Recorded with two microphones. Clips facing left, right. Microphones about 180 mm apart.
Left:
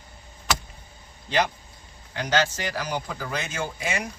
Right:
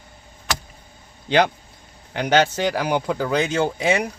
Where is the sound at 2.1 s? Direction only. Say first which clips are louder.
Right 6 dB; 65° right (ahead or behind).